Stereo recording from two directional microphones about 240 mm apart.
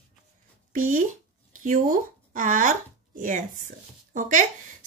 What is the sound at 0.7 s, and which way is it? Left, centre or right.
A woman's voice, right.